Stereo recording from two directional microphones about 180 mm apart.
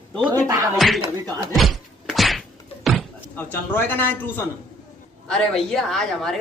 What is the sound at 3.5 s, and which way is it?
A woman's voice, 10° left (ahead or behind).